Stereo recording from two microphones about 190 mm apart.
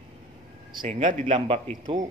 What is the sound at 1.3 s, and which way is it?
Speech, 30° right (ahead or behind).